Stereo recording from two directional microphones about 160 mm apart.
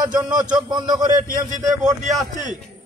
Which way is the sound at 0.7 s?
25° right (ahead or behind).